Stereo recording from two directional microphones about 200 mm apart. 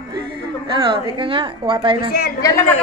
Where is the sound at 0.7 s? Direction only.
25° right (ahead or behind).